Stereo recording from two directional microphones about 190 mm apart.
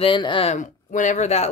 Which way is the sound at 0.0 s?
25° left (ahead or behind).